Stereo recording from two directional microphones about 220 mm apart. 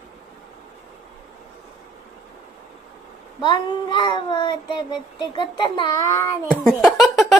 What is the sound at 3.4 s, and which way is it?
Child singing, 20° left (ahead or behind).